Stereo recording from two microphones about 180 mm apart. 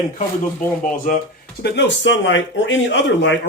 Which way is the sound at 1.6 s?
85° left.